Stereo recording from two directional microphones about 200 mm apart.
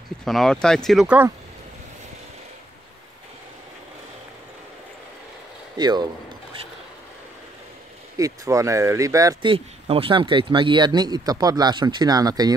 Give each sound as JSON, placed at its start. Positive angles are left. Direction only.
{"t": 0.2, "sound": "speech", "side_deg": 0}
{"t": 5.8, "sound": "speech", "side_deg": -20}
{"t": 8.2, "sound": "speech", "side_deg": -15}